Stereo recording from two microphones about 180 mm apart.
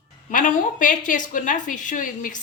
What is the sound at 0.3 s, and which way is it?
A woman's voice, 45° left (ahead or behind).